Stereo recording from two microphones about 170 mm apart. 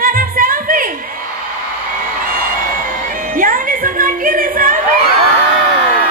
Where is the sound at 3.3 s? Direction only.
55° right (ahead or behind).